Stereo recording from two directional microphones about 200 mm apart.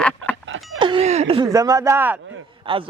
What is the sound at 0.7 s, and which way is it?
Speech, 25° right (ahead or behind).